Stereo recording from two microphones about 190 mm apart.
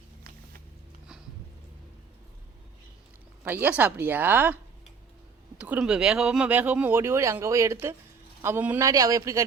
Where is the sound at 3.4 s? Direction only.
10° right (ahead or behind).